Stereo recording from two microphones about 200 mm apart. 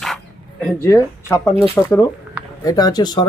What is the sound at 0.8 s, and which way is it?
Speech, 15° left (ahead or behind).